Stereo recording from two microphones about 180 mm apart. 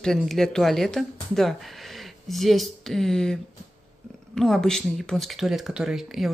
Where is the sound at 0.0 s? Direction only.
Centre (ahead or behind).